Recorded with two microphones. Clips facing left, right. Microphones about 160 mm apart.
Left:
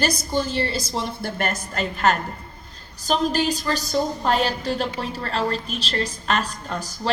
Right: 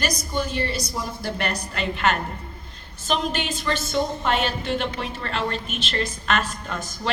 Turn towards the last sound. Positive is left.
turn(degrees=35)  # may be behind; listen again after turning